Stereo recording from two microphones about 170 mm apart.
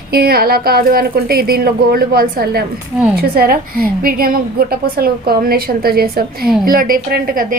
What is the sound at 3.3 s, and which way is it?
A woman's voice, 60° right (ahead or behind).